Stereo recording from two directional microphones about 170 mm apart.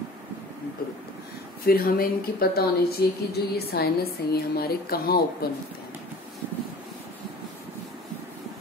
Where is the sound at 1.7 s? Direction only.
60° left (ahead or behind).